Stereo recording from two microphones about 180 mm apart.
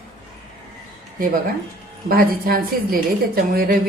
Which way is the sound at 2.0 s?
55° right (ahead or behind).